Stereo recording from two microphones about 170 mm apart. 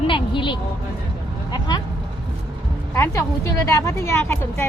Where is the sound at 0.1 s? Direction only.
30° left (ahead or behind).